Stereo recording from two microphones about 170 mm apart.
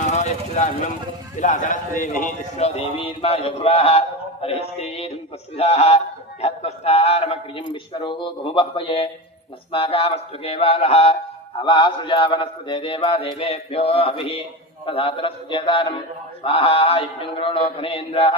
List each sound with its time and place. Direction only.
0.1 s vehicle: 40° left (ahead or behind)
1.4 s a man's voice: 50° left (ahead or behind)